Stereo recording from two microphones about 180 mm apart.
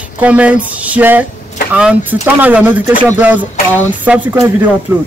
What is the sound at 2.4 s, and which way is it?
Speech, 10° right (ahead or behind).